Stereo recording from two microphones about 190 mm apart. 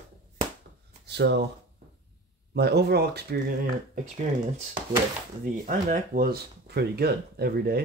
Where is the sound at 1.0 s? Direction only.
60° right (ahead or behind).